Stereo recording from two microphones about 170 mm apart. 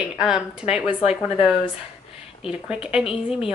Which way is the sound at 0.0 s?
5° right (ahead or behind).